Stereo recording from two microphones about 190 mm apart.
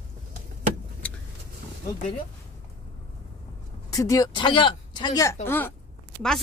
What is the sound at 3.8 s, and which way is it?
Speech, 15° left (ahead or behind).